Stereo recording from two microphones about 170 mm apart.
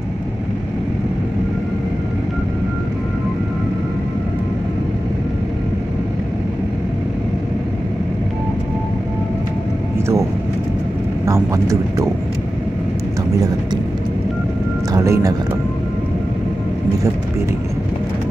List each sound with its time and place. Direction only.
9.9 s vehicle: 15° right (ahead or behind)
11.2 s a sound: 20° right (ahead or behind)
14.9 s music: 20° right (ahead or behind)